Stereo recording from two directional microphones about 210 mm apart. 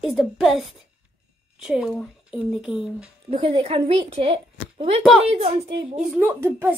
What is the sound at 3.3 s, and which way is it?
A woman's voice, 25° right (ahead or behind).